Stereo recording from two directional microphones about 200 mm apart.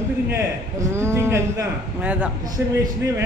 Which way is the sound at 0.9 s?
15° right (ahead or behind).